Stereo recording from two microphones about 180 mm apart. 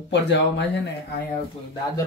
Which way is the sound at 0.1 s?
75° left (ahead or behind).